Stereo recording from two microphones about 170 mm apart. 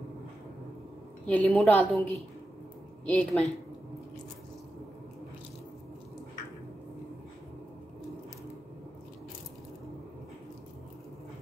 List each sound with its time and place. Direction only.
1.2 s a woman's voice: 10° left (ahead or behind)